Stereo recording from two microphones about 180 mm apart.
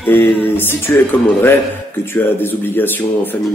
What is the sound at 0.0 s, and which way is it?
Speech, 10° left (ahead or behind).